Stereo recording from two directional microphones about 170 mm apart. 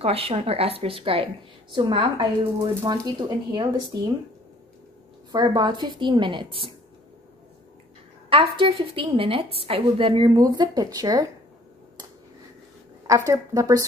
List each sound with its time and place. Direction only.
0.0 s a woman's voice: 35° right (ahead or behind)
5.3 s a woman's voice: 25° right (ahead or behind)
8.3 s a woman's voice: 30° right (ahead or behind)
13.0 s a woman's voice: 20° right (ahead or behind)